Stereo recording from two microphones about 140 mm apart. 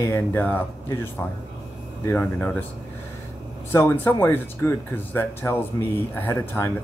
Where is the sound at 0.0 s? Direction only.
15° left (ahead or behind).